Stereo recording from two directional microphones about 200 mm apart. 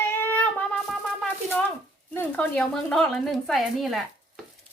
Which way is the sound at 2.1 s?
10° left (ahead or behind).